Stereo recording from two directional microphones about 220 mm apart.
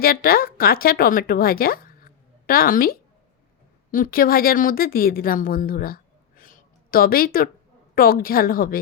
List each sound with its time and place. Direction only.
0.0 s a woman's voice: 40° left (ahead or behind)